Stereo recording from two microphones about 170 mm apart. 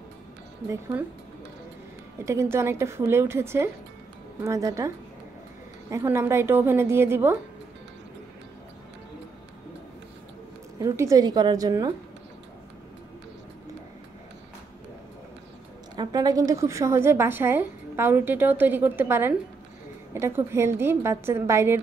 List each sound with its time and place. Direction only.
0.7 s a woman's voice: 20° right (ahead or behind)
2.2 s a woman's voice: 15° right (ahead or behind)
10.8 s a woman's voice: 20° right (ahead or behind)
16.0 s a woman's voice: 25° right (ahead or behind)